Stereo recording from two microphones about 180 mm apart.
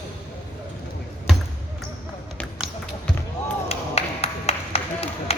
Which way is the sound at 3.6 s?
35° left (ahead or behind).